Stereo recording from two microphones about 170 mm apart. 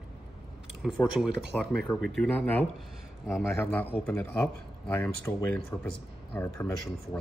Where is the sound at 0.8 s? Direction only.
5° right (ahead or behind).